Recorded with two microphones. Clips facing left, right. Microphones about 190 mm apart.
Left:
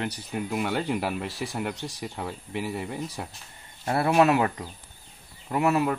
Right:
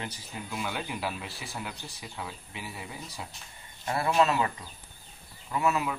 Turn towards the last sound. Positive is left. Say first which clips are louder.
# left 5 dB
turn(degrees=60)  # may be behind; listen again after turning